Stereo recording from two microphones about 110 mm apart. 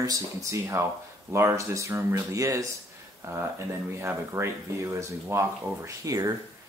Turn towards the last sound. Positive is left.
turn(degrees=-30)  # may be behind; listen again after turning